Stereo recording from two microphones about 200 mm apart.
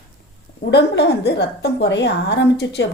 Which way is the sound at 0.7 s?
55° left (ahead or behind).